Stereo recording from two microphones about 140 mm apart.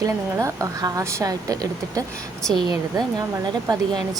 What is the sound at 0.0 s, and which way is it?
A woman's voice, 25° right (ahead or behind).